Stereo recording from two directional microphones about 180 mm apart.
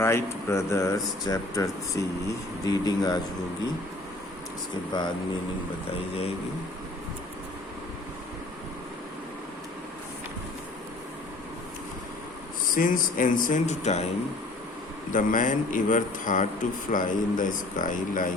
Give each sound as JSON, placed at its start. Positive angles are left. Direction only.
{"t": 0.0, "sound": "speech", "side_deg": 15}
{"t": 4.9, "sound": "speech", "side_deg": 25}
{"t": 12.7, "sound": "a man's voice", "side_deg": 50}
{"t": 15.1, "sound": "a man's voice", "side_deg": 45}